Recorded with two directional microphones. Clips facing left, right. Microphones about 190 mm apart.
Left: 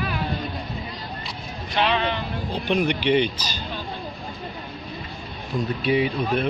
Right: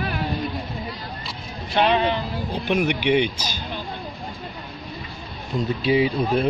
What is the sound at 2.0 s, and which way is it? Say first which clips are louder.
Speech: right 3 dB; 10° right (ahead or behind).